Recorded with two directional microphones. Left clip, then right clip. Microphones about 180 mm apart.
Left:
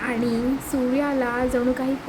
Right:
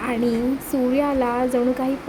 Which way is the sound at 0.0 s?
15° right (ahead or behind).